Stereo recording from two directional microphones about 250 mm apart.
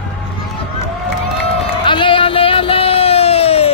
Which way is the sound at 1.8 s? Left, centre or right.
Centre.